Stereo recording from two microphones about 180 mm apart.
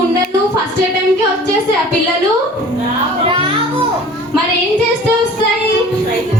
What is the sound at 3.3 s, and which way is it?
Music, 30° right (ahead or behind).